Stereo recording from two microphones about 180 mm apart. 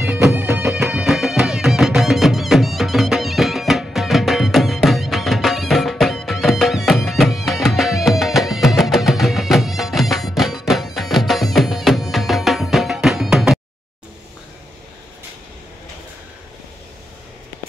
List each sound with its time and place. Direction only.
0.0 s music: 10° right (ahead or behind)
1.0 s music: centre (ahead or behind)